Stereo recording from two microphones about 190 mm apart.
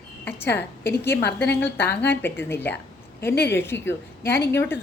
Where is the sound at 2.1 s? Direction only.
10° left (ahead or behind).